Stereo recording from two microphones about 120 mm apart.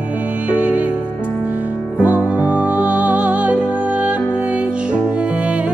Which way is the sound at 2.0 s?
10° right (ahead or behind).